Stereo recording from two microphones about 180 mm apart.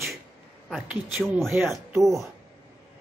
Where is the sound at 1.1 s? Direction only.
Centre (ahead or behind).